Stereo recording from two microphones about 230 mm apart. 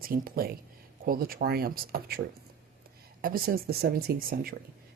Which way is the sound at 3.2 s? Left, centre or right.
Right.